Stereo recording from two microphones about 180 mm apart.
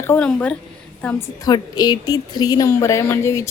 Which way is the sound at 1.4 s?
20° left (ahead or behind).